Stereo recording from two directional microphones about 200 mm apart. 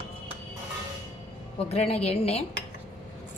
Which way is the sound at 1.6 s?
30° left (ahead or behind).